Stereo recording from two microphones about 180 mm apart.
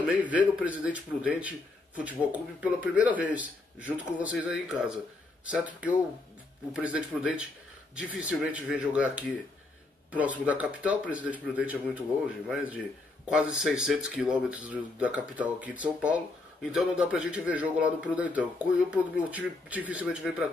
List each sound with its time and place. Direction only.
0.1 s a man's voice: 10° right (ahead or behind)